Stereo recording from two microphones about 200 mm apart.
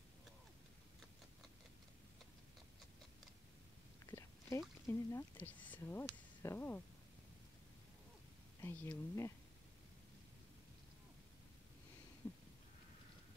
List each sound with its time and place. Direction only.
4.0 s speech: 15° left (ahead or behind)
8.5 s speech: 10° left (ahead or behind)
12.2 s a sound: 10° left (ahead or behind)